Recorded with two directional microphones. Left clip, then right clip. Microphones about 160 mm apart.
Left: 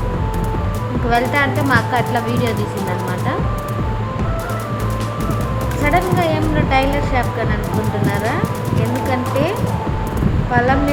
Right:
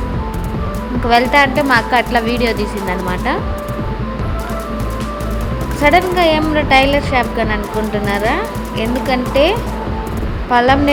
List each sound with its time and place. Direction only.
1.1 s speech: 20° right (ahead or behind)
5.8 s speech: 25° right (ahead or behind)